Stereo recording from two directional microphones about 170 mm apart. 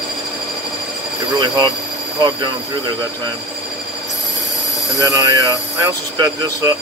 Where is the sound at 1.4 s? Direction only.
25° right (ahead or behind).